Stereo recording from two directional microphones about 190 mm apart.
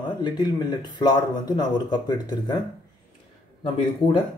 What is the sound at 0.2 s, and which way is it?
Speech, 25° left (ahead or behind).